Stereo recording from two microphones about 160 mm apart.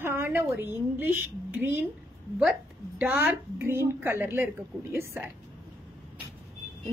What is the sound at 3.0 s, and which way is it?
A woman's voice, 10° right (ahead or behind).